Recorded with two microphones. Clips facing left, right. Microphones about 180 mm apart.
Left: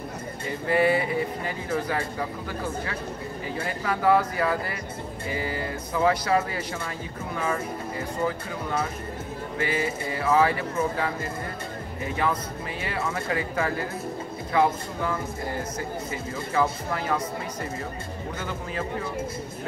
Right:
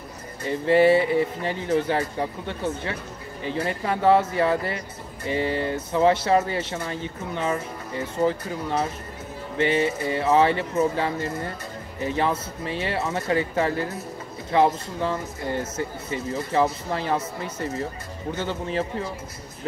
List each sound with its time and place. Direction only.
0.5 s speech: 30° right (ahead or behind)